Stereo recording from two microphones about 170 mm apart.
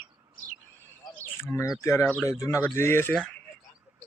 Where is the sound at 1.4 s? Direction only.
15° left (ahead or behind).